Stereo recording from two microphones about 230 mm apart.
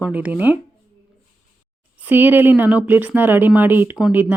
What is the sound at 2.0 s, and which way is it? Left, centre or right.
Speech, centre.